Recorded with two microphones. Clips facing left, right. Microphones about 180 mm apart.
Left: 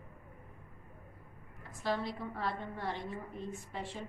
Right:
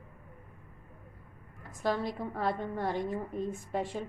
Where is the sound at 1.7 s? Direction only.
45° right (ahead or behind).